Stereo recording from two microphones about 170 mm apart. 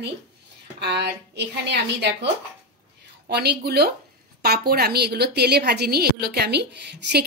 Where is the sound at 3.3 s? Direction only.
75° right (ahead or behind).